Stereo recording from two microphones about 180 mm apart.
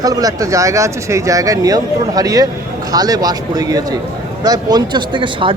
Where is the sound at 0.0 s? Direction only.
20° right (ahead or behind).